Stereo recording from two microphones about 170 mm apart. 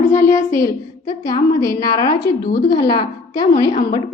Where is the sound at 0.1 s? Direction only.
15° left (ahead or behind).